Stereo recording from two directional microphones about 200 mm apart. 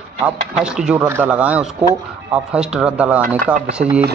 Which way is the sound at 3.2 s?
45° right (ahead or behind).